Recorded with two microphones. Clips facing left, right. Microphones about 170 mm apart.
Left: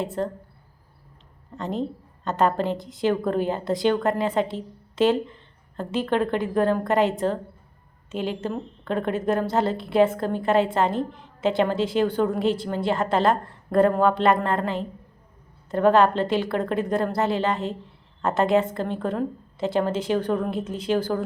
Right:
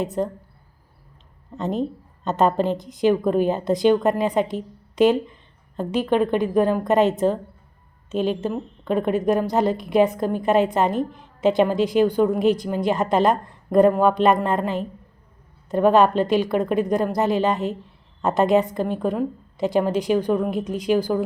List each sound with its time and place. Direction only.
0.0 s a woman's voice: 20° right (ahead or behind)
1.5 s a woman's voice: 20° right (ahead or behind)